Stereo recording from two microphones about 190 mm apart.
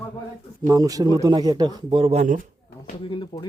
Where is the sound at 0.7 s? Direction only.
20° right (ahead or behind).